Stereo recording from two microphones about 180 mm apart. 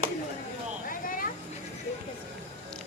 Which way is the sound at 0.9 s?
50° left (ahead or behind).